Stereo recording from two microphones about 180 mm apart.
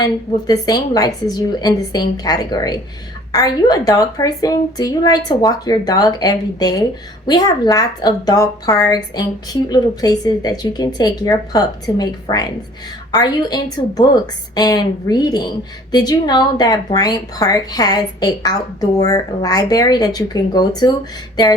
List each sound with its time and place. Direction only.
0.0 s a woman's voice: 20° left (ahead or behind)